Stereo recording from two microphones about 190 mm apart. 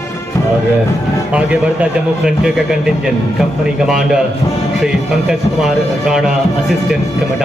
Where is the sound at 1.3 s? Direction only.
5° right (ahead or behind).